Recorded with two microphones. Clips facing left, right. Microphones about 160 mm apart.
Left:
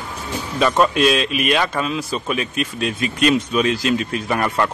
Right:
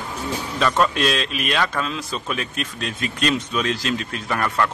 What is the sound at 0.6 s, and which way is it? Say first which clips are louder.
A man's voice: left 4 dB; 10° left (ahead or behind).